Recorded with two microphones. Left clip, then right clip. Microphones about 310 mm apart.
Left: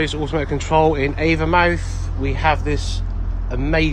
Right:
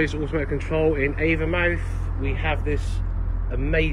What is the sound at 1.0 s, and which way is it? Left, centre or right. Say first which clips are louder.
Speech: left 4 dB; left.